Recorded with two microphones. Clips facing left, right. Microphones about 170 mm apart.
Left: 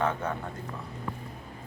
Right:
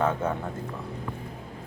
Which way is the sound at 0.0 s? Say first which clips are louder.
Right 3 dB; 10° right (ahead or behind).